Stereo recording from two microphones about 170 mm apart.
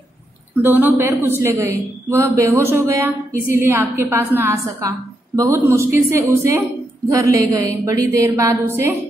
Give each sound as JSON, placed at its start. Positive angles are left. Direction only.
{"t": 0.6, "sound": "a woman's voice", "side_deg": -10}